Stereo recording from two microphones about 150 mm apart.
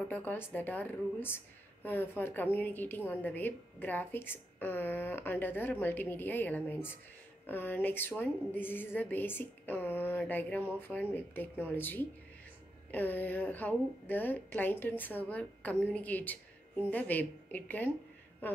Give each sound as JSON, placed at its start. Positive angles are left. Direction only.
{"t": 0.1, "sound": "a woman's voice", "side_deg": 10}